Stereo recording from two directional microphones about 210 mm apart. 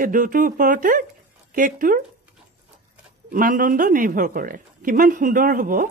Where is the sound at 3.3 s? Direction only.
40° right (ahead or behind).